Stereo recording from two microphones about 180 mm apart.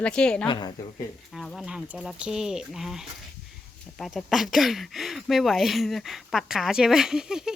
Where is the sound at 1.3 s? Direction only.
Centre (ahead or behind).